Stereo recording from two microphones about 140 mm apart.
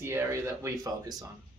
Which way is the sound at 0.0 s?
20° right (ahead or behind).